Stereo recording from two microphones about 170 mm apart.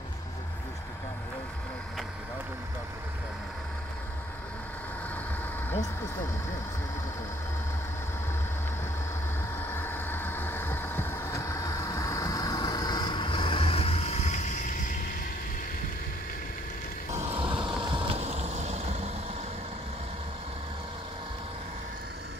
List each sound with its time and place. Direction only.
9.7 s vehicle: 10° left (ahead or behind); by 14.6 s 45° left (ahead or behind)
17.1 s vehicle: 35° right (ahead or behind)